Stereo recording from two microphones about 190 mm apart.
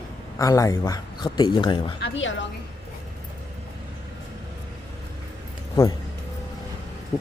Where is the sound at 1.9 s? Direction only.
70° left (ahead or behind).